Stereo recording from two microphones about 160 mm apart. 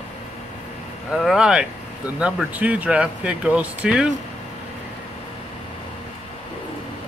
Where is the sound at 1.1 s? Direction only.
Centre (ahead or behind).